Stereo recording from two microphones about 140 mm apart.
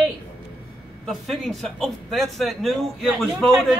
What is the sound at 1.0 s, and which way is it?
A man's voice, centre (ahead or behind).